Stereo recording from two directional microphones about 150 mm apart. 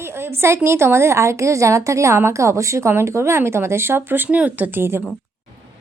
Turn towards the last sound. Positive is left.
turn(degrees=-15)  # may be behind; listen again after turning